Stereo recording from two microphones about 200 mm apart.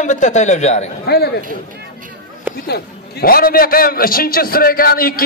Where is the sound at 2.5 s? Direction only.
55° left (ahead or behind).